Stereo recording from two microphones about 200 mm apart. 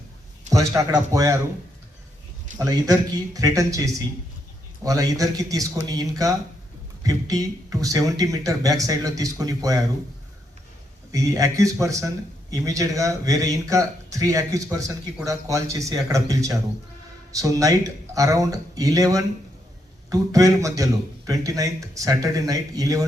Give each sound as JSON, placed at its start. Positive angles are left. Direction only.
{"t": 0.5, "sound": "a man's voice", "side_deg": -15}
{"t": 2.6, "sound": "a man's voice", "side_deg": -20}
{"t": 11.1, "sound": "a man's voice", "side_deg": -15}